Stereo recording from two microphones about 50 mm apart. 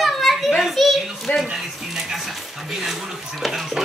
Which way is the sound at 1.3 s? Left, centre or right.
Left.